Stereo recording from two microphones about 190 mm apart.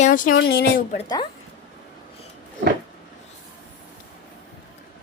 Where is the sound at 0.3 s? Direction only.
55° left (ahead or behind).